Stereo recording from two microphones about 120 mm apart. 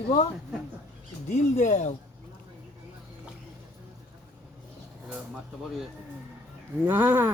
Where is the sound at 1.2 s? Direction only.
90° left.